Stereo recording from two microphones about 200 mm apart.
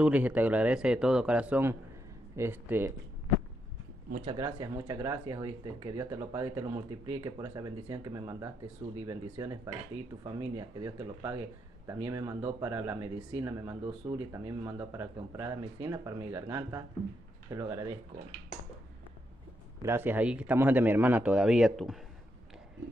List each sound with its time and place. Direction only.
0.0 s speech: 5° right (ahead or behind)
4.1 s speech: 30° right (ahead or behind)
19.8 s speech: 10° right (ahead or behind)